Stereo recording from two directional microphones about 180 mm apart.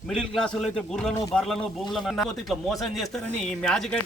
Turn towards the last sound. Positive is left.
turn(degrees=5)  # may be behind; listen again after turning